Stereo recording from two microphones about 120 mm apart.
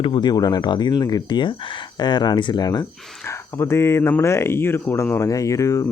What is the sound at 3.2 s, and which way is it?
Speech, 20° left (ahead or behind).